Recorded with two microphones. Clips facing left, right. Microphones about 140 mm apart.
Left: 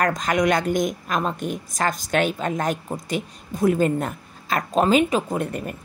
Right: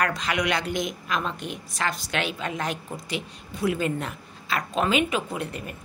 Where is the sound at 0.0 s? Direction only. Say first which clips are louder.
Left 5 dB; 45° left (ahead or behind).